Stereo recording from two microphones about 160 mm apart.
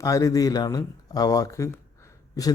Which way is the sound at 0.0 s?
20° left (ahead or behind).